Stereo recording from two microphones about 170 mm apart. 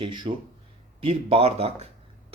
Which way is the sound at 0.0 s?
30° right (ahead or behind).